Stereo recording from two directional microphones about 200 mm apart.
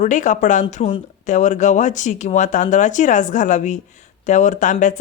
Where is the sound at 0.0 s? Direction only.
40° left (ahead or behind).